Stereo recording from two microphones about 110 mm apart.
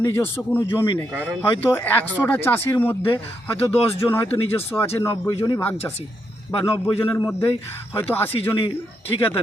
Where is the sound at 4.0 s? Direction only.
20° left (ahead or behind).